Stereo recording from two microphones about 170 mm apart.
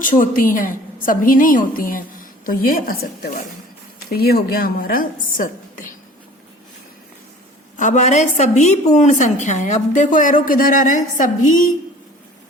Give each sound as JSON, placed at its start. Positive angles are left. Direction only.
{"t": 0.2, "sound": "a woman's voice", "side_deg": 55}
{"t": 7.8, "sound": "a woman's voice", "side_deg": 45}